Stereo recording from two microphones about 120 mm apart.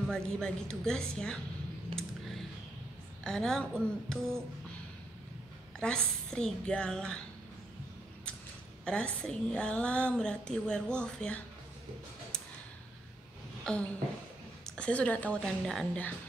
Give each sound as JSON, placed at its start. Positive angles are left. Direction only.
{"t": 0.1, "sound": "speech", "side_deg": 5}
{"t": 1.9, "sound": "typing", "side_deg": -50}
{"t": 3.3, "sound": "speech", "side_deg": 5}
{"t": 5.8, "sound": "a woman's voice", "side_deg": 5}
{"t": 8.8, "sound": "a woman's voice", "side_deg": 10}
{"t": 13.7, "sound": "a woman's voice", "side_deg": 5}